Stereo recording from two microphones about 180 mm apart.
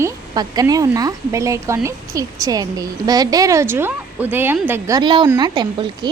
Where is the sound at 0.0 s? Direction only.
20° right (ahead or behind).